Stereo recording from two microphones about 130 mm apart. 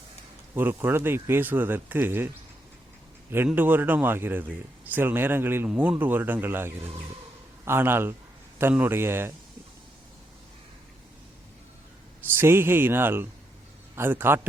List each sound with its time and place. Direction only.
0.5 s speech: 15° right (ahead or behind)
3.3 s speech: 15° right (ahead or behind)
12.3 s speech: 15° right (ahead or behind)